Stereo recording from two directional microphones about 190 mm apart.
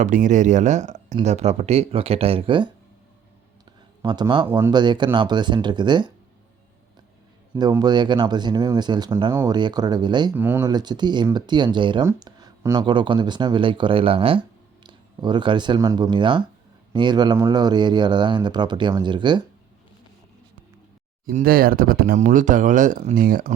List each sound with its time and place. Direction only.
0.0 s speech: 40° right (ahead or behind)
4.0 s speech: 25° right (ahead or behind)
7.5 s speech: 15° right (ahead or behind)
10.3 s speech: 10° right (ahead or behind)
10.7 s speech: 20° right (ahead or behind)
21.2 s speech: 50° right (ahead or behind)